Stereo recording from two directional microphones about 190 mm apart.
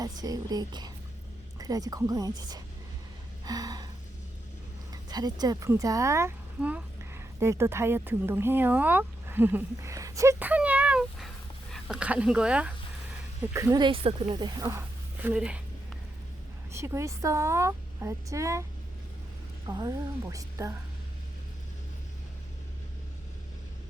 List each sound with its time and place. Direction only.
0.0 s a woman's voice: 20° right (ahead or behind)
3.4 s a sound: 20° right (ahead or behind)
4.9 s speech: 20° right (ahead or behind)
16.7 s speech: 15° right (ahead or behind)
19.6 s speech: 15° right (ahead or behind)